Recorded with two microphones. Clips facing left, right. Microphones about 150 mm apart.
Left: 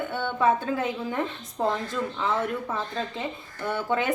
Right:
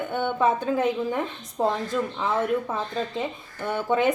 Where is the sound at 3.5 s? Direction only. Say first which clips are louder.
Right 3 dB; 15° right (ahead or behind).